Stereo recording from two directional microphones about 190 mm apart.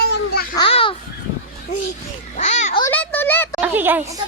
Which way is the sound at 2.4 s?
40° left (ahead or behind).